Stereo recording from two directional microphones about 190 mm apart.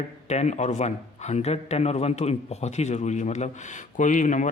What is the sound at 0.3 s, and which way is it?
A man's voice, 35° left (ahead or behind).